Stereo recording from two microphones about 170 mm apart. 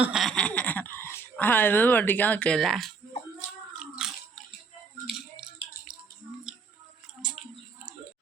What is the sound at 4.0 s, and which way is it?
Biting, centre (ahead or behind).